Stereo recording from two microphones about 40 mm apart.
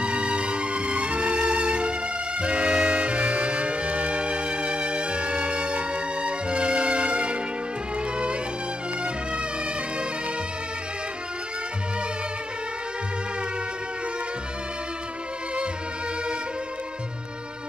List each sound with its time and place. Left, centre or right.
0.0 s music: right